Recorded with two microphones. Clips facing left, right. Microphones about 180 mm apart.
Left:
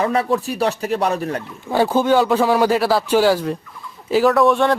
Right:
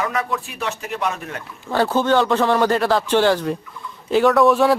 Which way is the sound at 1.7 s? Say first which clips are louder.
Left 2 dB; 10° left (ahead or behind).